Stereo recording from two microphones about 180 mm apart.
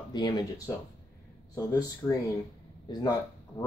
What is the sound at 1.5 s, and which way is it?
Speech, 15° left (ahead or behind).